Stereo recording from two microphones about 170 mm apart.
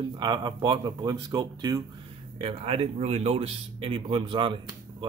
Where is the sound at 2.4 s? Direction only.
30° right (ahead or behind).